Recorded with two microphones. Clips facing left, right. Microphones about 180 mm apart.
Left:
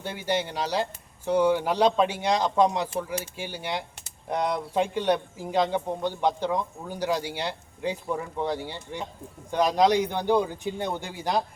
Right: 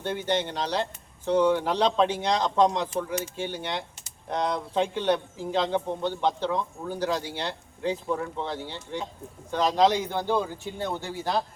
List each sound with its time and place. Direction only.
0.0 s a man's voice: 10° left (ahead or behind)